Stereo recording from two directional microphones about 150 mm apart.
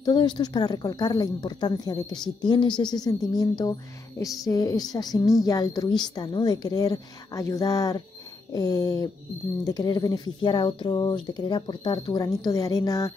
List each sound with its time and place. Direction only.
0.0 s a woman's voice: 30° left (ahead or behind)